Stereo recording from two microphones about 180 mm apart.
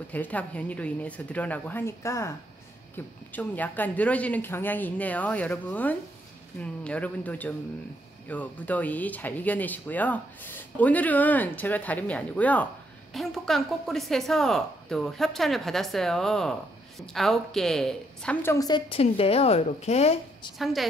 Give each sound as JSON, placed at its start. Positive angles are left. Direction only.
{"t": 0.1, "sound": "speech", "side_deg": 10}
{"t": 3.3, "sound": "a woman's voice", "side_deg": 10}
{"t": 18.9, "sound": "a woman's voice", "side_deg": 35}
{"t": 20.5, "sound": "a woman's voice", "side_deg": 0}